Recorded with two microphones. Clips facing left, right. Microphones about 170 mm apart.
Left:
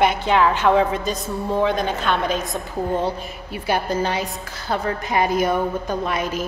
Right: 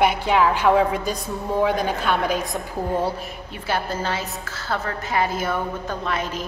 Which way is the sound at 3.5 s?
15° left (ahead or behind).